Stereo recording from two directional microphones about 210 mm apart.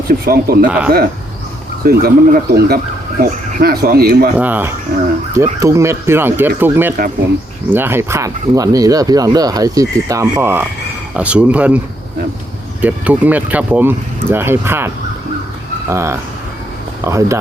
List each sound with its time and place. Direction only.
0.3 s speech: 45° right (ahead or behind)
1.8 s speech: 45° right (ahead or behind)
4.4 s speech: 10° right (ahead or behind)
12.8 s speech: 5° right (ahead or behind)
15.9 s speech: 10° right (ahead or behind)